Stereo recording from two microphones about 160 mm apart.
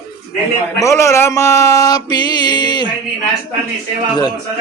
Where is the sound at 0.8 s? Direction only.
20° left (ahead or behind).